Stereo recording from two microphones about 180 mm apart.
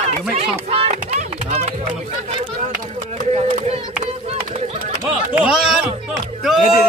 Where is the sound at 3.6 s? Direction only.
35° right (ahead or behind).